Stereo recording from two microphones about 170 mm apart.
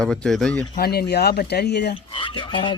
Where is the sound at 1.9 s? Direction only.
30° left (ahead or behind).